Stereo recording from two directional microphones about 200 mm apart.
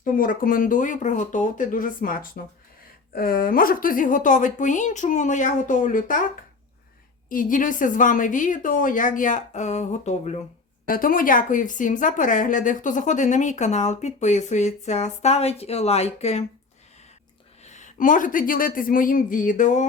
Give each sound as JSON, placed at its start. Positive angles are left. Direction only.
{"t": 0.0, "sound": "speech", "side_deg": 45}
{"t": 7.3, "sound": "speech", "side_deg": 45}
{"t": 17.6, "sound": "speech", "side_deg": 35}